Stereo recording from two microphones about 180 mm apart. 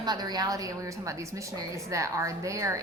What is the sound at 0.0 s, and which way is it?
A woman's voice, 20° right (ahead or behind).